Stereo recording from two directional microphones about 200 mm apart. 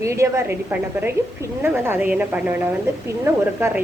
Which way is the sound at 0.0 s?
15° right (ahead or behind).